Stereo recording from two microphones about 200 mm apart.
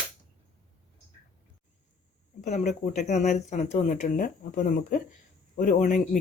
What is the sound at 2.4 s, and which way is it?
Speech, 35° left (ahead or behind).